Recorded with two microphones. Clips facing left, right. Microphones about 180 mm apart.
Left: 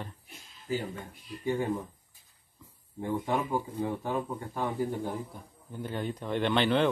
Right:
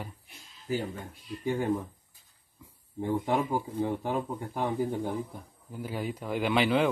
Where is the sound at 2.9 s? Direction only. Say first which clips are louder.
Right 2 dB; 15° right (ahead or behind).